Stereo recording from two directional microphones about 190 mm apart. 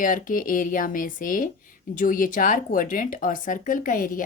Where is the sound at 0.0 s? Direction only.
45° left (ahead or behind).